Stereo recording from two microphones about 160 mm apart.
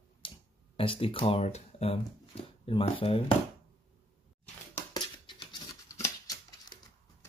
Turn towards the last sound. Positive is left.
turn(degrees=20)  # may be behind; listen again after turning